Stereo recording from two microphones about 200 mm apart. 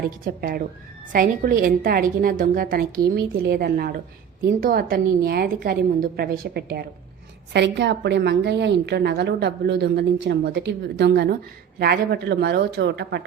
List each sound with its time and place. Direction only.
0.3 s a woman's voice: 50° right (ahead or behind)